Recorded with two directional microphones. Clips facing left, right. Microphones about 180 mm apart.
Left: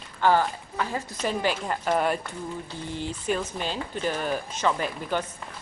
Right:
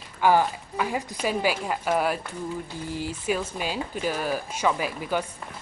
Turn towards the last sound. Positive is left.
turn(degrees=-5)  # may be behind; listen again after turning